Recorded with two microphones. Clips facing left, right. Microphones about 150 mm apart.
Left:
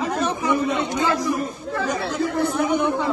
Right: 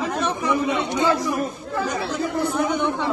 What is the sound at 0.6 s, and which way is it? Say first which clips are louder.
A man's voice: right 1 dB; 10° right (ahead or behind).